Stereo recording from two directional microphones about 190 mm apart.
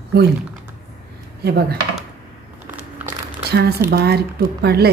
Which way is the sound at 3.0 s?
55° right (ahead or behind).